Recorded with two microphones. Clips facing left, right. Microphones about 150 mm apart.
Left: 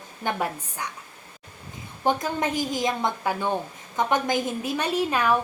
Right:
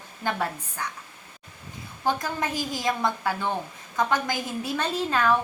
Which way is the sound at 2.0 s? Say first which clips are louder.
Left 3 dB; 20° left (ahead or behind).